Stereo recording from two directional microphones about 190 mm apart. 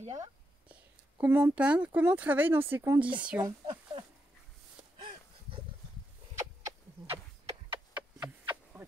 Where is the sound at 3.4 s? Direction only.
25° right (ahead or behind).